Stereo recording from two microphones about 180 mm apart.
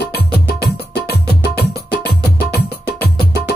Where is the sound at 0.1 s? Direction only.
60° left (ahead or behind).